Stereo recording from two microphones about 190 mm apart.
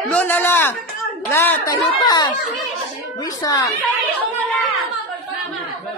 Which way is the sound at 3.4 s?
20° left (ahead or behind).